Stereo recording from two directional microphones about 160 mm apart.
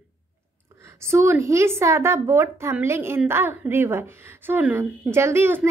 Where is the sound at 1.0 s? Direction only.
15° right (ahead or behind).